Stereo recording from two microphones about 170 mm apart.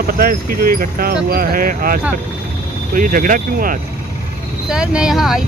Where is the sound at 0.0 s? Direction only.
60° right (ahead or behind).